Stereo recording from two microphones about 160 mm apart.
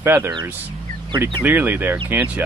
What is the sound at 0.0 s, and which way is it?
Speech, 15° right (ahead or behind).